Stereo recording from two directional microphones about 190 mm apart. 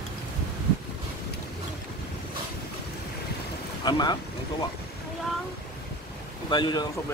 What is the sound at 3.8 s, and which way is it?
Speech, 20° left (ahead or behind).